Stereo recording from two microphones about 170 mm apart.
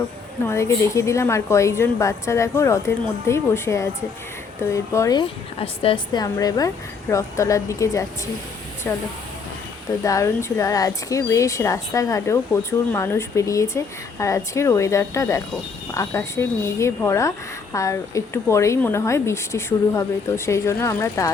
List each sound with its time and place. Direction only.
0.4 s a woman's voice: 15° left (ahead or behind); by 6.2 s 35° left (ahead or behind)
6.2 s a woman's voice: 20° left (ahead or behind)